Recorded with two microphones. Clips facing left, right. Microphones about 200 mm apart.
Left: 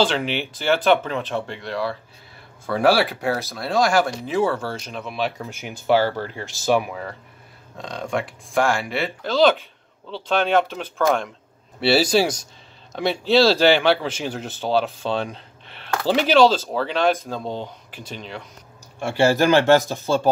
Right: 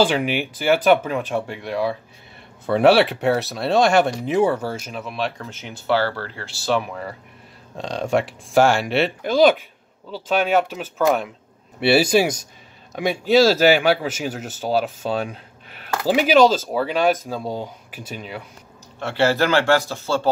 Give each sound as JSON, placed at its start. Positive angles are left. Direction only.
{"t": 0.0, "sound": "speech", "side_deg": -10}
{"t": 5.4, "sound": "speech", "side_deg": 15}
{"t": 7.7, "sound": "speech", "side_deg": -30}
{"t": 8.5, "sound": "speech", "side_deg": -75}
{"t": 9.2, "sound": "speech", "side_deg": -15}
{"t": 18.9, "sound": "speech", "side_deg": 15}